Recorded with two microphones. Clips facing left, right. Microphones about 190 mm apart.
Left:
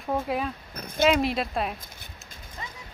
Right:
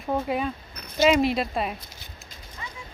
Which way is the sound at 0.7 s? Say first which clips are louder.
Right 1 dB; 50° left (ahead or behind).